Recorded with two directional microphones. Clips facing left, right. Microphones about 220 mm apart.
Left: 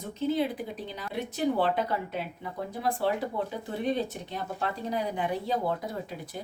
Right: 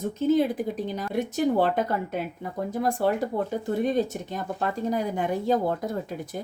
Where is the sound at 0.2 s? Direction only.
45° right (ahead or behind).